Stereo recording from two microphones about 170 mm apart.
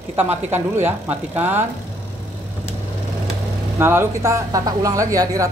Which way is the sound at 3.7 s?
15° right (ahead or behind).